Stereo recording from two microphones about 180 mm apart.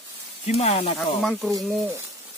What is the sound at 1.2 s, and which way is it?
Speech, centre (ahead or behind).